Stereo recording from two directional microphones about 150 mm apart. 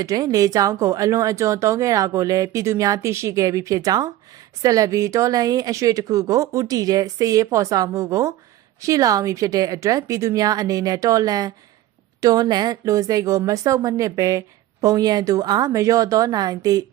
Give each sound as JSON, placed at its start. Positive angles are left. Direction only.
{"t": 0.0, "sound": "a woman's voice", "side_deg": -25}